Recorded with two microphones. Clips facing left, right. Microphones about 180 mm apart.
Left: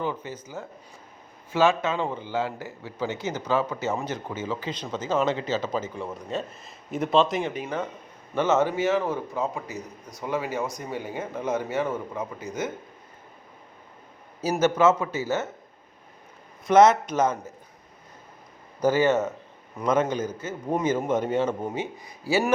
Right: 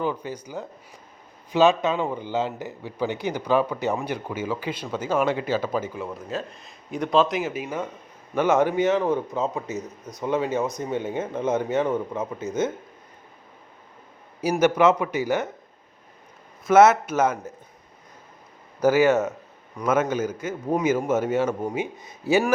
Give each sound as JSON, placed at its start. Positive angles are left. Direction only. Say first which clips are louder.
{"t": 0.2, "sound": "a man's voice", "louder": "right 3 dB", "side_deg": -15}
{"t": 14.6, "sound": "speech", "louder": "right 2 dB", "side_deg": -15}
{"t": 16.6, "sound": "speech", "louder": "right 1 dB", "side_deg": -10}
{"t": 18.8, "sound": "speech", "louder": "right 3 dB", "side_deg": -10}
{"t": 21.8, "sound": "a man's voice", "louder": "right 3 dB", "side_deg": -20}